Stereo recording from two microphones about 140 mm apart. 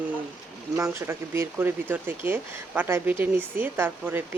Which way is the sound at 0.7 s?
20° right (ahead or behind).